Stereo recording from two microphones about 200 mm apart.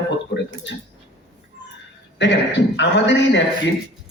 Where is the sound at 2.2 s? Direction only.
60° left (ahead or behind).